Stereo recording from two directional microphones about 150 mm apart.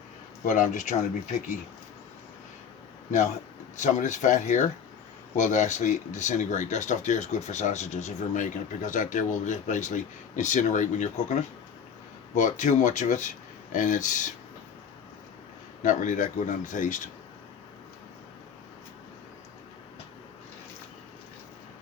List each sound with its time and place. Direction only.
0.4 s speech: 55° left (ahead or behind)
3.8 s speech: 50° left (ahead or behind)
15.8 s speech: 55° left (ahead or behind)